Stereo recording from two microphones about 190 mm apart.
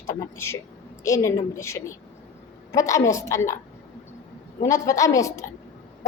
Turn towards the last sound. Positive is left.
turn(degrees=15)  # may be behind; listen again after turning